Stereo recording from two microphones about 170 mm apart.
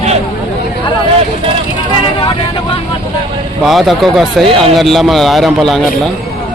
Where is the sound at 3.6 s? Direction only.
Centre (ahead or behind).